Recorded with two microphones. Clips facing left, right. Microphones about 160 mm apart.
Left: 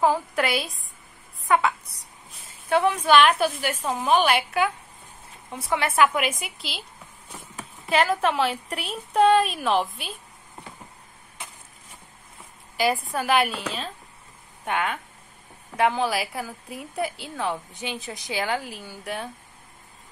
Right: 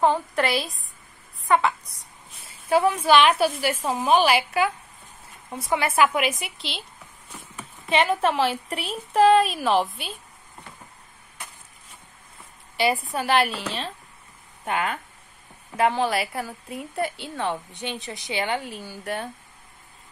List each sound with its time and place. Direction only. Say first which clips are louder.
0.0 s a woman's voice: right 1 dB; centre (ahead or behind)
7.9 s a woman's voice: even; centre (ahead or behind)
12.7 s a woman's voice: even; centre (ahead or behind)